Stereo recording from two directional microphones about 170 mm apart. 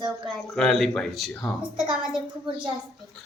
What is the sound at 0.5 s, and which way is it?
Speech, centre (ahead or behind).